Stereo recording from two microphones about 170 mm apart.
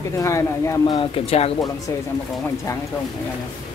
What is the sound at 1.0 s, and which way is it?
Speech, 35° left (ahead or behind).